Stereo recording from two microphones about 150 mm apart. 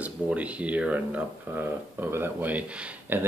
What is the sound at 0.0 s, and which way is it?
Speech, 10° right (ahead or behind).